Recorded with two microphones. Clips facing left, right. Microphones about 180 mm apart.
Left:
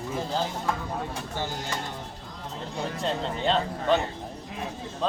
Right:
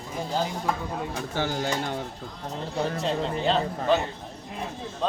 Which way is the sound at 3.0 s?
5° right (ahead or behind).